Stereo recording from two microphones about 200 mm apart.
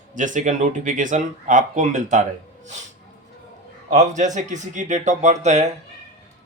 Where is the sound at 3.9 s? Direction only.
35° right (ahead or behind).